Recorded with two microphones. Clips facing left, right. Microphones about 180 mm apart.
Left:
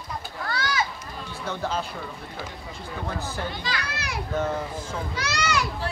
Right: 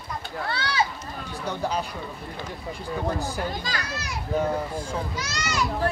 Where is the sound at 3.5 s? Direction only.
45° right (ahead or behind).